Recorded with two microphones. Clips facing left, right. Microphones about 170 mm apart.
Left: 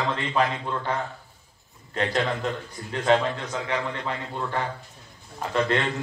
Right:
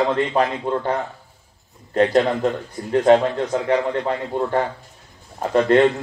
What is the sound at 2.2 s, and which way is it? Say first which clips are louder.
A man's voice: right 7 dB; 40° right (ahead or behind).